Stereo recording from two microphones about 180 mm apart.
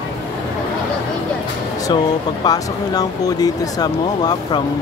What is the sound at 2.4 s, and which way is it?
Speech, 20° left (ahead or behind).